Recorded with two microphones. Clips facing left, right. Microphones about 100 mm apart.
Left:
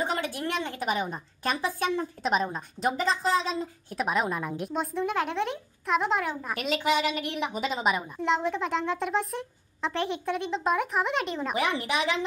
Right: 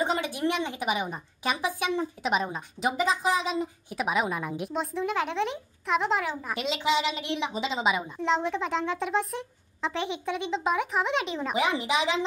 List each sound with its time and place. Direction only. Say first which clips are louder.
0.0 s a woman's voice: right 2 dB; 15° right (ahead or behind)
2.2 s a woman's voice: left 3 dB; 5° right (ahead or behind)
6.5 s a woman's voice: even; 20° right (ahead or behind)
8.2 s a woman's voice: even; centre (ahead or behind)
11.5 s speech: right 2 dB; 15° right (ahead or behind)